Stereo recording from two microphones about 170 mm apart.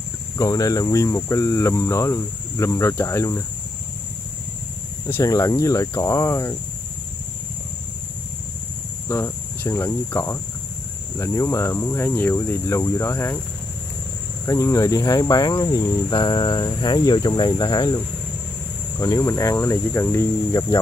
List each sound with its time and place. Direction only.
0.4 s cricket: 20° left (ahead or behind)
5.0 s cricket: 20° left (ahead or behind)
9.1 s cricket: 15° left (ahead or behind)
14.4 s cricket: 20° left (ahead or behind)